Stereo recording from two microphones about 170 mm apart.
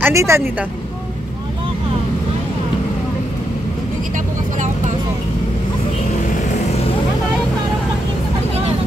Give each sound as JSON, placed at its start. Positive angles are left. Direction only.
{"t": 0.0, "sound": "speech", "side_deg": -15}